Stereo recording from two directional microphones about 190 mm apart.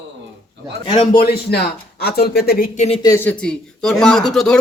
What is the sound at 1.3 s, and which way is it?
Speech, 60° left (ahead or behind).